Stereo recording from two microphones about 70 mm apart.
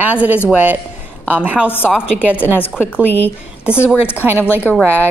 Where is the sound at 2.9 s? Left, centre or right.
Centre.